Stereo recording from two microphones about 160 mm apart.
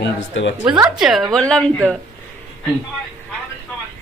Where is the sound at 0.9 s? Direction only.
Centre (ahead or behind).